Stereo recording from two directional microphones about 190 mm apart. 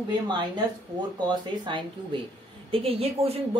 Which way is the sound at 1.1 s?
25° right (ahead or behind).